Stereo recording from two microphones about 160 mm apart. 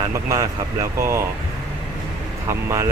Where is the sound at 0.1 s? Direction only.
20° right (ahead or behind).